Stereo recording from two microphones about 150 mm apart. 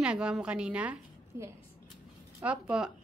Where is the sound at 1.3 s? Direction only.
20° right (ahead or behind).